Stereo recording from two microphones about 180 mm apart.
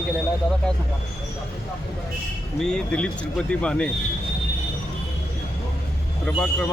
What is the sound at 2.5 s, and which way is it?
Speech, 5° left (ahead or behind).